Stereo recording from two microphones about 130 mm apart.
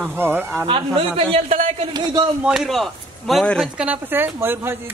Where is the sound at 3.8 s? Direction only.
15° right (ahead or behind).